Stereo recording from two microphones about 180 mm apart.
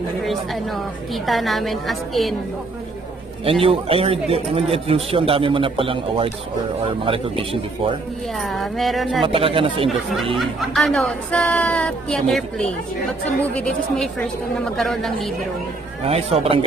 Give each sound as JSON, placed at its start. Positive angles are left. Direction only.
{"t": 0.2, "sound": "speech", "side_deg": 0}
{"t": 3.4, "sound": "a man's voice", "side_deg": -30}
{"t": 8.4, "sound": "speech", "side_deg": 0}
{"t": 9.2, "sound": "a man's voice", "side_deg": -30}
{"t": 10.3, "sound": "speech", "side_deg": 0}
{"t": 16.0, "sound": "a man's voice", "side_deg": -35}